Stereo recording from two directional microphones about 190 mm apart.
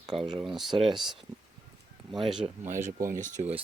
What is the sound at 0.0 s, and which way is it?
Speech, 5° right (ahead or behind).